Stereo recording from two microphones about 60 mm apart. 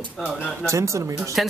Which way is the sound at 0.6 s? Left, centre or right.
Right.